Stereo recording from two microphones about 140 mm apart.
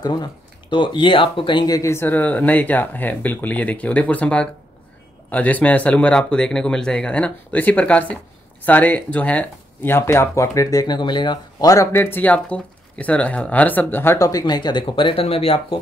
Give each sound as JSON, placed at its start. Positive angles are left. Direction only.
{"t": 0.0, "sound": "speech", "side_deg": 30}
{"t": 1.8, "sound": "speech", "side_deg": 20}